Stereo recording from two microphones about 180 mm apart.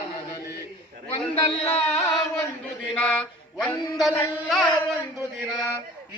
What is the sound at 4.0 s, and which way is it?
Speech, centre (ahead or behind).